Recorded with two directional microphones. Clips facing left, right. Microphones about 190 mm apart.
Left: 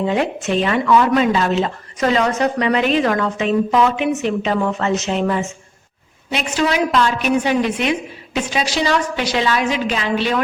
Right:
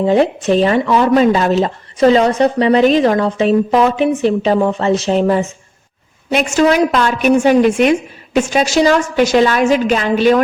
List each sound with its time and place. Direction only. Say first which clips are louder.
0.0 s speech: right 6 dB; 35° right (ahead or behind)
6.3 s a woman's voice: right 7 dB; 45° right (ahead or behind)